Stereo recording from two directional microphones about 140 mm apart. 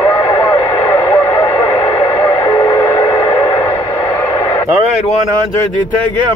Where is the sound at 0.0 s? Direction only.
25° left (ahead or behind).